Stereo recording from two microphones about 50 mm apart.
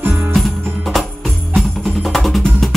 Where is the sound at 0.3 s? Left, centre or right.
Centre.